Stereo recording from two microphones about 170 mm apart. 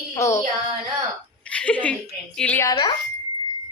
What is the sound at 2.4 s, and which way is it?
Speech, 10° left (ahead or behind).